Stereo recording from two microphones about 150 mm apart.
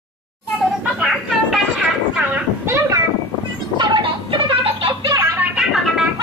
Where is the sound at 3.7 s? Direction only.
30° right (ahead or behind).